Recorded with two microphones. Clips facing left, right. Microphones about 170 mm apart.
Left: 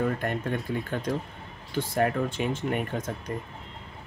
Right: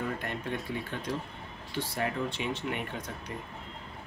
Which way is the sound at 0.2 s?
50° left (ahead or behind).